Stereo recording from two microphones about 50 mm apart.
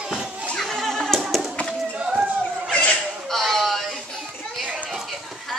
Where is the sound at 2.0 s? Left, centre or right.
Centre.